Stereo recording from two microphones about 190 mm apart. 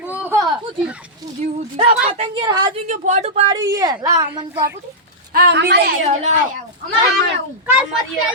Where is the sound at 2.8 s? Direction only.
40° right (ahead or behind).